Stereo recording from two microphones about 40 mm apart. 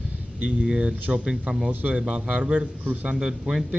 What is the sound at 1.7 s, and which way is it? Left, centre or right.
Speech, right.